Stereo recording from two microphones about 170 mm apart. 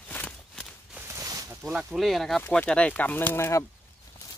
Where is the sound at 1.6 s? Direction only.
5° right (ahead or behind); by 3.6 s 15° left (ahead or behind).